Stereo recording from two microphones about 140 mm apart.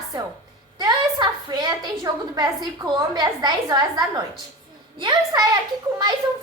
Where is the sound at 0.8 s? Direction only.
30° right (ahead or behind).